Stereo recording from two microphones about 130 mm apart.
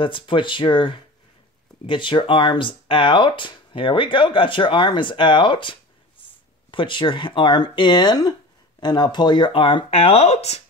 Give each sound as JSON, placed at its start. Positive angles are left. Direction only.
{"t": 0.0, "sound": "speech", "side_deg": 40}